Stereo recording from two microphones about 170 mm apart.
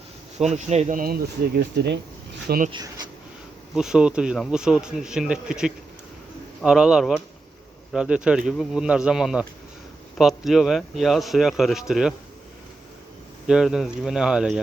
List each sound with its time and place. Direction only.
0.3 s speech: 40° right (ahead or behind); by 2.6 s 65° right (ahead or behind)
3.8 s speech: 5° right (ahead or behind)
13.5 s speech: 5° right (ahead or behind)